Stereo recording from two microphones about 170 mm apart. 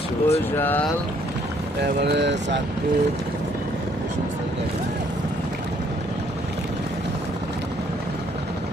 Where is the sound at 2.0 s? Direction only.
90° right.